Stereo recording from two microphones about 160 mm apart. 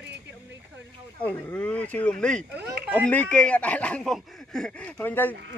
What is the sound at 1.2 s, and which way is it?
Speech, 5° left (ahead or behind).